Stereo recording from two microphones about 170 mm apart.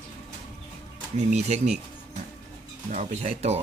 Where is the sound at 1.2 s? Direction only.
40° right (ahead or behind).